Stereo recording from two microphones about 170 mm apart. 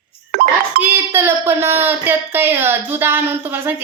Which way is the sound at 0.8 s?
15° right (ahead or behind).